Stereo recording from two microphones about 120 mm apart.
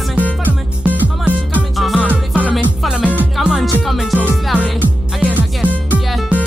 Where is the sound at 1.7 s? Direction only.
Centre (ahead or behind).